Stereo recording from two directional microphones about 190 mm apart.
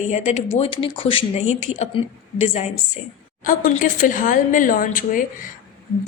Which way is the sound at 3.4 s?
45° left (ahead or behind).